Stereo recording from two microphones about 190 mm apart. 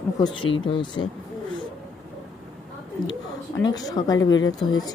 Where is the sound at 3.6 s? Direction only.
20° left (ahead or behind).